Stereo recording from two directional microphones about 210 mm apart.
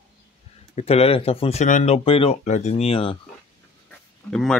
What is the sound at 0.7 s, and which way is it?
Speech, 30° left (ahead or behind).